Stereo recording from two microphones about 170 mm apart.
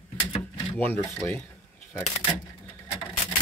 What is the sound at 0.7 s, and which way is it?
Speech, 10° left (ahead or behind).